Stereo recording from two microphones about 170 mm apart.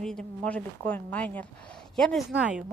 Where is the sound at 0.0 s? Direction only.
5° left (ahead or behind).